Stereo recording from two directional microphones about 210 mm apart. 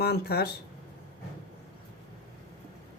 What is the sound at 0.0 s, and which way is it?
Speech, 50° left (ahead or behind).